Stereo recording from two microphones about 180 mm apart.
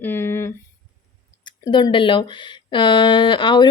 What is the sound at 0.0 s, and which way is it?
Speech, 10° left (ahead or behind).